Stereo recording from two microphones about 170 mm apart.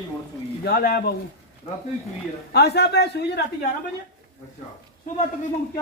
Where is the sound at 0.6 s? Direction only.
70° left (ahead or behind).